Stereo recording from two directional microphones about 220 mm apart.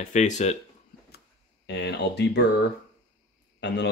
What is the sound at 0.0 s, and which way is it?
Speech, 30° left (ahead or behind).